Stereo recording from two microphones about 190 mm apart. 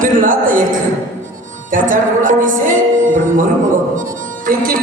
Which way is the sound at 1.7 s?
45° right (ahead or behind).